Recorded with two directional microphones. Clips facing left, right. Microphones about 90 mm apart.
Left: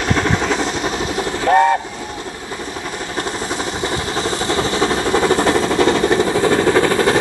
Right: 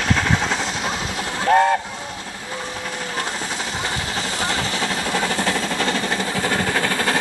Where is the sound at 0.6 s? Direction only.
50° left (ahead or behind).